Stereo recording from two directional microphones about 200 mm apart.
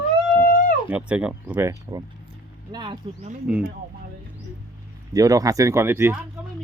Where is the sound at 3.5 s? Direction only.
5° right (ahead or behind).